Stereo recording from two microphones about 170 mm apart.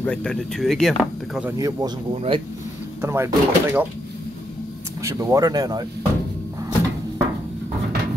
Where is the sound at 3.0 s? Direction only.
15° right (ahead or behind).